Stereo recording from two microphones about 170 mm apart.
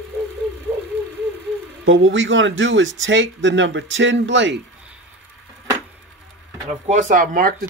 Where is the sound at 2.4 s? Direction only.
90° right.